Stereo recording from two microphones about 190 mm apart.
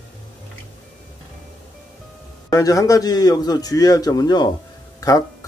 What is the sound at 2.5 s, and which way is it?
A man's voice, 15° left (ahead or behind).